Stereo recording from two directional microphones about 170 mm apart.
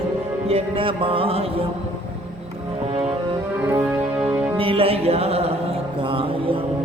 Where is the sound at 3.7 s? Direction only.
15° right (ahead or behind).